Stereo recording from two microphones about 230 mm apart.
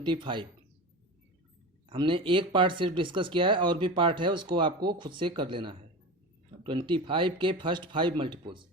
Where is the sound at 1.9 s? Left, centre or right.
Right.